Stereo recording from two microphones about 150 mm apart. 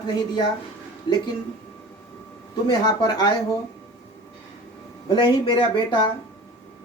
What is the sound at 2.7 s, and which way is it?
Speech, 25° left (ahead or behind).